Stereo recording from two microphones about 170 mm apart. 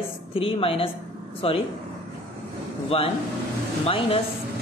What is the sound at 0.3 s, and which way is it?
Speech, 35° left (ahead or behind).